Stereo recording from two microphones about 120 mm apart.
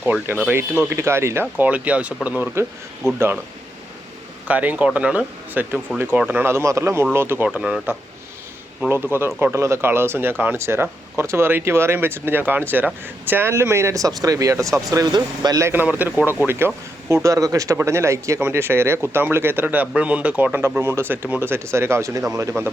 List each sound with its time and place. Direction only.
0.0 s speech: 15° right (ahead or behind)
4.4 s speech: 10° right (ahead or behind)
7.4 s speech: 10° right (ahead or behind); by 15.7 s 30° right (ahead or behind)
15.7 s speech: 15° right (ahead or behind)